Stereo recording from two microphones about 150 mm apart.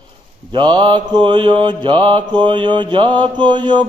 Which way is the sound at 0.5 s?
30° right (ahead or behind).